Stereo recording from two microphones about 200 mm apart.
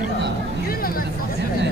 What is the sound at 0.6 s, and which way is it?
Speech, 45° left (ahead or behind).